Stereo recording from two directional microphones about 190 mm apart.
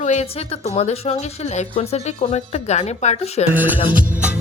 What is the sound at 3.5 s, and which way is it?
Music, 10° right (ahead or behind).